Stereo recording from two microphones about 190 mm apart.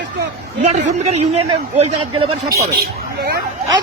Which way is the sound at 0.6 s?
35° right (ahead or behind).